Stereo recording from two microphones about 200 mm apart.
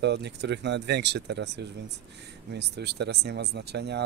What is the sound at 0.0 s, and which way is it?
Speech, 60° right (ahead or behind).